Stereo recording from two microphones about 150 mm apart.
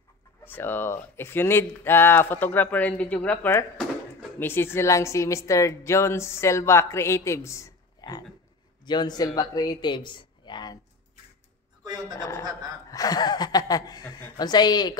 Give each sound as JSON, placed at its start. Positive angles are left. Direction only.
{"t": 0.4, "sound": "a woman's voice", "side_deg": 15}
{"t": 12.2, "sound": "a woman's voice", "side_deg": 20}